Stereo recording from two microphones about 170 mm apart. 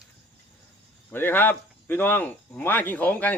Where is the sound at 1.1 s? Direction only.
10° left (ahead or behind).